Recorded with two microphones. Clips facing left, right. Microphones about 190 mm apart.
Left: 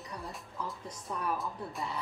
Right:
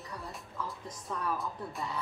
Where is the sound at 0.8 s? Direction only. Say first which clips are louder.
Even; 15° left (ahead or behind).